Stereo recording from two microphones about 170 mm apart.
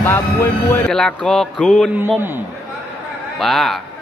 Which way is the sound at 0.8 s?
5° left (ahead or behind).